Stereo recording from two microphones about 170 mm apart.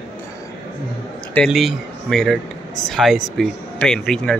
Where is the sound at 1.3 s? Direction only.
Centre (ahead or behind).